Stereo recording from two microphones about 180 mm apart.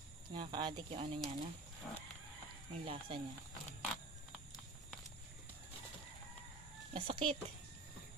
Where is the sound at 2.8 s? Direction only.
30° right (ahead or behind).